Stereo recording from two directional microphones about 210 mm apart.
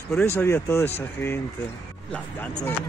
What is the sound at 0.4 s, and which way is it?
Speech, 10° left (ahead or behind).